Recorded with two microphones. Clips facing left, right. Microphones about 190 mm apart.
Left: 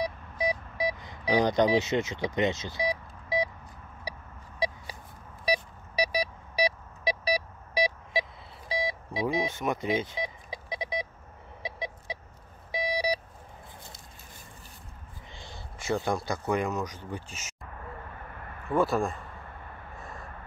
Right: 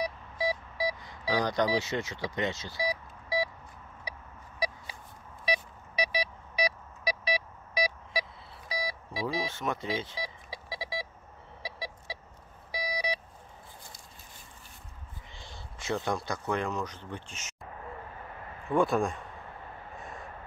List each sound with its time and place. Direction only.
0.0 s a sound: 20° left (ahead or behind)
4.1 s vehicle: 35° left (ahead or behind)
5.4 s beep: 40° left (ahead or behind); by 11.1 s 20° left (ahead or behind)
11.6 s a sound: 20° left (ahead or behind)
12.7 s beep: 25° left (ahead or behind)
15.8 s speech: 5° left (ahead or behind)
18.7 s speech: centre (ahead or behind)
20.0 s vehicle: centre (ahead or behind)